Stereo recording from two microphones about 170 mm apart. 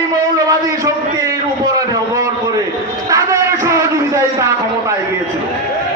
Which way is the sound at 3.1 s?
20° right (ahead or behind).